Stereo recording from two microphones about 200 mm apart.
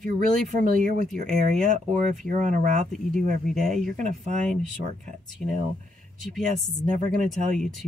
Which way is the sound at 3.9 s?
35° right (ahead or behind).